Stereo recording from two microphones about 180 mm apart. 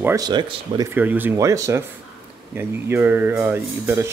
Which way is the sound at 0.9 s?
10° right (ahead or behind).